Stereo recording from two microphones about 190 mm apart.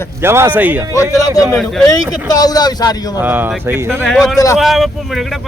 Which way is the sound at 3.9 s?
5° left (ahead or behind).